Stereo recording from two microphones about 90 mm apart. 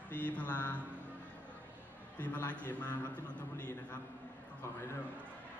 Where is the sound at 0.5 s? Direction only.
20° left (ahead or behind).